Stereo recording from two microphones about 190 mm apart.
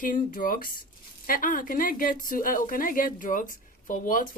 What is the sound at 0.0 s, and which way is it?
A woman's voice, 45° left (ahead or behind).